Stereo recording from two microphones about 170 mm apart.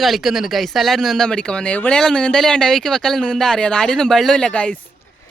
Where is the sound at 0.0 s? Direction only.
Centre (ahead or behind).